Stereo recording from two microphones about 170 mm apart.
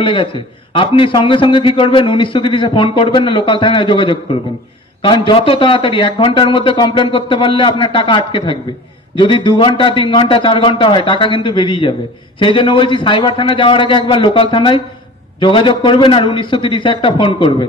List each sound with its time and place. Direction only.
0.0 s a man's voice: 30° left (ahead or behind)